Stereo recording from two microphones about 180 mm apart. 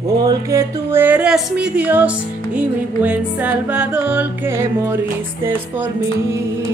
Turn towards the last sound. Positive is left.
turn(degrees=-10)  # may be behind; listen again after turning